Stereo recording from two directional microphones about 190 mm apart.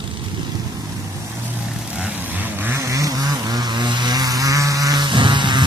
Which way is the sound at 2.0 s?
10° right (ahead or behind).